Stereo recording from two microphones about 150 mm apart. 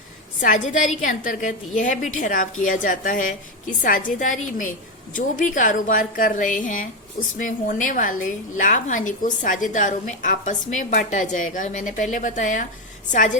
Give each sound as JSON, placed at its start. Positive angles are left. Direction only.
{"t": 0.4, "sound": "a woman's voice", "side_deg": 60}